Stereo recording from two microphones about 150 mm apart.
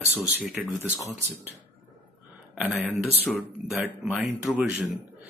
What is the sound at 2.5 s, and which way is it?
Speech, centre (ahead or behind).